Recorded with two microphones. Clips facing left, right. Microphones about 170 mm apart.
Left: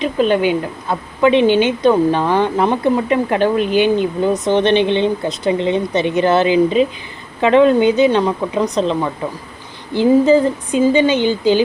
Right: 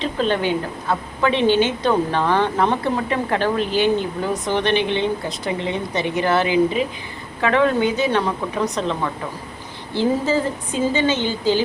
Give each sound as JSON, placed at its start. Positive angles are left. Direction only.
{"t": 0.0, "sound": "a woman's voice", "side_deg": 15}